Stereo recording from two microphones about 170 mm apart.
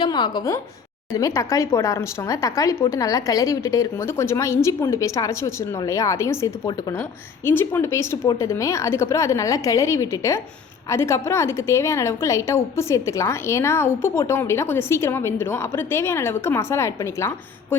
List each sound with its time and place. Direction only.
0.0 s a woman's voice: 25° left (ahead or behind)